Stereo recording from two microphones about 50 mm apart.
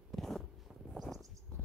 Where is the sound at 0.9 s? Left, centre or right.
Centre.